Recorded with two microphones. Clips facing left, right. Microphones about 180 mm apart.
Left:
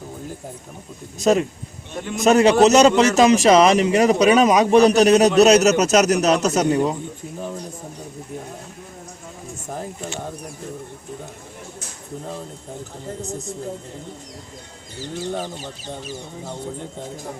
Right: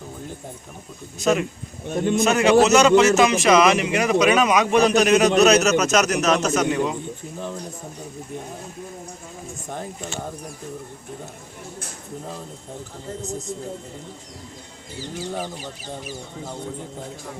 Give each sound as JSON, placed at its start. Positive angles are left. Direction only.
{"t": 1.2, "sound": "a man's voice", "side_deg": 35}